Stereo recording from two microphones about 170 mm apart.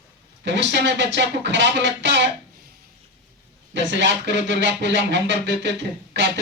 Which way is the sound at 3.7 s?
90° right.